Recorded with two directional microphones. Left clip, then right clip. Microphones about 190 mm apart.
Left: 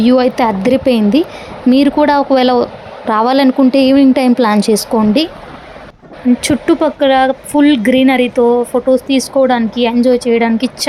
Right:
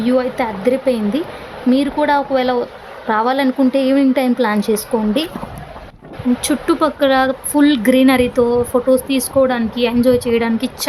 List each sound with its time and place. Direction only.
0.0 s a woman's voice: 30° left (ahead or behind)
6.4 s a woman's voice: 20° left (ahead or behind)